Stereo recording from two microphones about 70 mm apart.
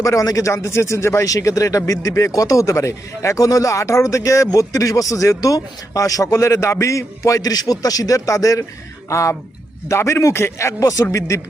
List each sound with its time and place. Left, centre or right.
0.0 s speech: left